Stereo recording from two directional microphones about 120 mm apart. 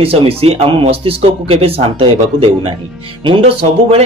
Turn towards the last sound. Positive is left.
turn(degrees=-55)  # may be behind; listen again after turning